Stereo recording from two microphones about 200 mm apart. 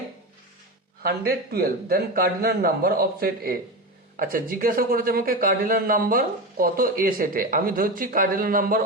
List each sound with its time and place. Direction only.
1.0 s a man's voice: 50° right (ahead or behind)